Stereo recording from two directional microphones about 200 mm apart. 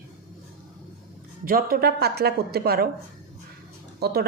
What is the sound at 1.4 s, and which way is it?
Speech, 50° right (ahead or behind).